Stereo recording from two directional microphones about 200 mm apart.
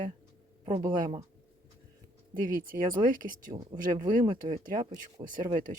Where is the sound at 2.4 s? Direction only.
45° right (ahead or behind).